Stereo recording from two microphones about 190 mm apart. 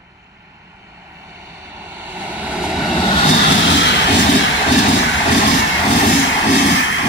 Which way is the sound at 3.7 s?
70° left (ahead or behind).